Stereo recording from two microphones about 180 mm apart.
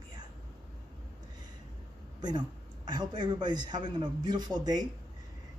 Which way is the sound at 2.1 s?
25° right (ahead or behind).